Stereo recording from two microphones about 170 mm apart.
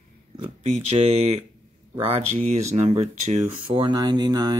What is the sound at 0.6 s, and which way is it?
Speech, 40° right (ahead or behind).